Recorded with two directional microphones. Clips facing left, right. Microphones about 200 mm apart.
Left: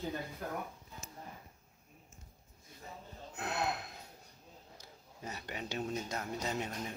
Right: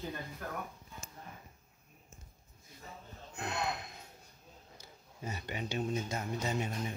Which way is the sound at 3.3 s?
5° left (ahead or behind).